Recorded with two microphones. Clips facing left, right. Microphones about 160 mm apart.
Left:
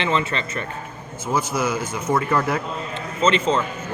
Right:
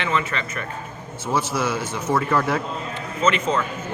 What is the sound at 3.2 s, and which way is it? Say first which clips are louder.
Speech: left 2 dB; 30° left (ahead or behind).